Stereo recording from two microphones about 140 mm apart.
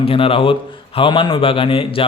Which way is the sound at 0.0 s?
40° left (ahead or behind).